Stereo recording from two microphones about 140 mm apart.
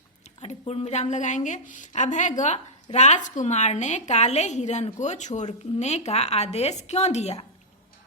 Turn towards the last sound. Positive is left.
turn(degrees=50)  # may be behind; listen again after turning